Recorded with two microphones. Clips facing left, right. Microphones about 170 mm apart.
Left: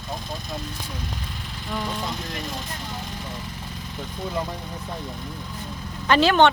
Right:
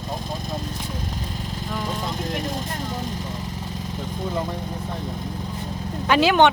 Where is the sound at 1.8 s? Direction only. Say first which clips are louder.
Right 4 dB; 45° right (ahead or behind).